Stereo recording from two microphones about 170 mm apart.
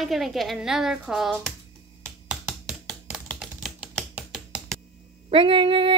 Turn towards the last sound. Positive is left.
turn(degrees=-30)  # may be behind; listen again after turning